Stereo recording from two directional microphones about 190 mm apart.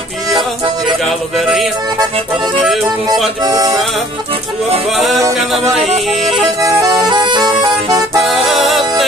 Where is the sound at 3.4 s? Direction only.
20° right (ahead or behind).